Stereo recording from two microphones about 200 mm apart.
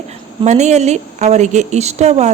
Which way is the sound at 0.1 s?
35° right (ahead or behind).